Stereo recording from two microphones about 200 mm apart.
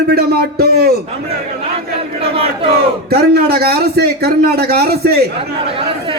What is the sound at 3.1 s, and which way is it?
A man's voice, 50° right (ahead or behind).